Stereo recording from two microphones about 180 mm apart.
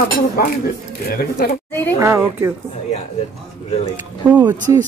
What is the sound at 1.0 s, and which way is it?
Speech, 55° left (ahead or behind).